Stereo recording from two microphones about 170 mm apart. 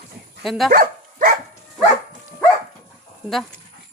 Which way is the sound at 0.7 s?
60° right (ahead or behind).